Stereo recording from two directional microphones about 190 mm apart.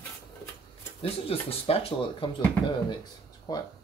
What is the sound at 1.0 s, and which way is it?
Speech, 30° left (ahead or behind).